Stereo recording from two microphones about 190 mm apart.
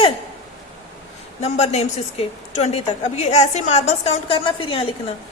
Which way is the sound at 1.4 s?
35° left (ahead or behind).